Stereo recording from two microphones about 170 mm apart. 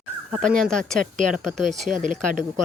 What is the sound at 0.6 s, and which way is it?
Speech, centre (ahead or behind).